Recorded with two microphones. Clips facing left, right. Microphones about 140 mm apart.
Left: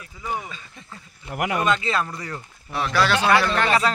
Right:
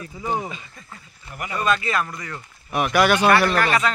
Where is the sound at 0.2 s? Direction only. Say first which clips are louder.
Right 4 dB; 30° right (ahead or behind).